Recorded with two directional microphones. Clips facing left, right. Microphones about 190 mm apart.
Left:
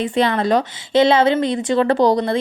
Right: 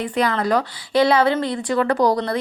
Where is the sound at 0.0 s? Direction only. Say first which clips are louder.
Left 3 dB; 25° left (ahead or behind).